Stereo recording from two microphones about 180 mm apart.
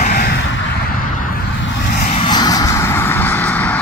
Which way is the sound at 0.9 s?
50° left (ahead or behind).